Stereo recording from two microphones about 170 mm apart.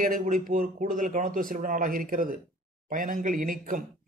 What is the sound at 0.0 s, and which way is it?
A man's voice, 50° right (ahead or behind).